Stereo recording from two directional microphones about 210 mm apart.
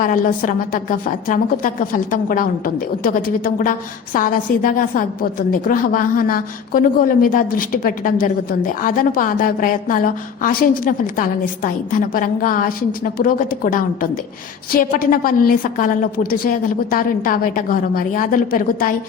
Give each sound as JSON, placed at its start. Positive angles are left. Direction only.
{"t": 0.0, "sound": "a woman's voice", "side_deg": 40}